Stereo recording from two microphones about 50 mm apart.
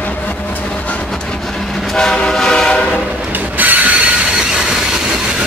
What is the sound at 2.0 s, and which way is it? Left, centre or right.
Train, centre.